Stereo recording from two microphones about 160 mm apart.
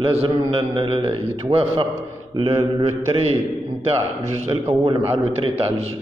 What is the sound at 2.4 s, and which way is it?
Mantra, 25° right (ahead or behind).